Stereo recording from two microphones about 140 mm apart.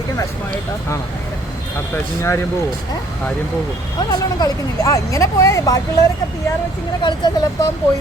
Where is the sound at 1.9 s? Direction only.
20° left (ahead or behind).